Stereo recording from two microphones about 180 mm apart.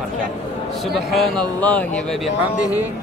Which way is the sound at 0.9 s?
Centre (ahead or behind).